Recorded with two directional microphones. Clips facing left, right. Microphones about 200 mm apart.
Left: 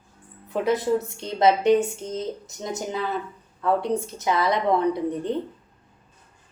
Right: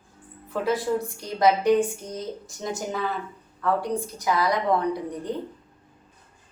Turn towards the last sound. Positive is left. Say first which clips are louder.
# left 4 dB
turn(degrees=25)  # may be behind; listen again after turning